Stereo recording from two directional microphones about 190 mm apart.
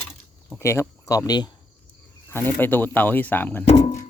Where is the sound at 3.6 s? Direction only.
35° left (ahead or behind).